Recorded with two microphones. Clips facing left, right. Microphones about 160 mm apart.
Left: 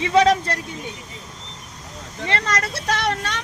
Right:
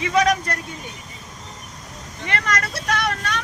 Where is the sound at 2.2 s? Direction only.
25° left (ahead or behind).